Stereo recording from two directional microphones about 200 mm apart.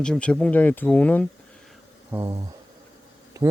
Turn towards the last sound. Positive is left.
turn(degrees=-15)  # may be behind; listen again after turning